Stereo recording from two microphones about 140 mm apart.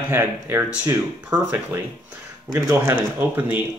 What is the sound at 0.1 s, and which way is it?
Speech, 15° right (ahead or behind).